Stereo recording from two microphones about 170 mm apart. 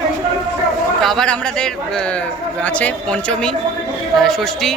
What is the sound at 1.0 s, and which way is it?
A woman's voice, 5° left (ahead or behind).